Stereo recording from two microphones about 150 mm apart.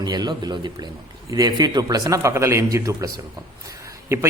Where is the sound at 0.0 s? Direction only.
30° right (ahead or behind).